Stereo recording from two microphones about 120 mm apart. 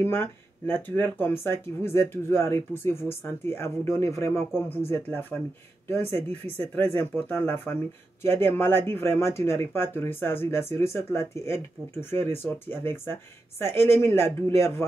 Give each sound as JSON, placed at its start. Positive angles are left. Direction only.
{"t": 0.0, "sound": "speech", "side_deg": 20}
{"t": 6.5, "sound": "speech", "side_deg": 15}